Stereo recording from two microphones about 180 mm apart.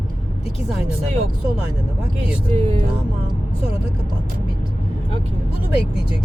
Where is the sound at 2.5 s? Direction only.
30° right (ahead or behind).